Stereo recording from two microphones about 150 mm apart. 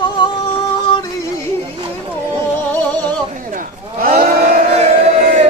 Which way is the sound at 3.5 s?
65° right (ahead or behind).